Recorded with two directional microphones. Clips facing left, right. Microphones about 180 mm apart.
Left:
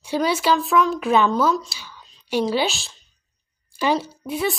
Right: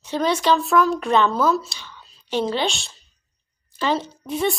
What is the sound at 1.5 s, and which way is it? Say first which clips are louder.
Speech: right 2 dB; 5° right (ahead or behind).